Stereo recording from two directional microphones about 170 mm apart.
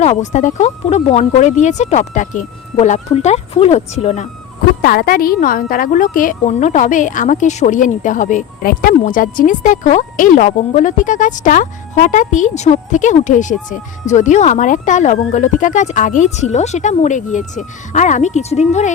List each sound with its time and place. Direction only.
0.0 s a woman's voice: 40° left (ahead or behind)
4.8 s a woman's voice: 60° left (ahead or behind); by 18.9 s 40° left (ahead or behind)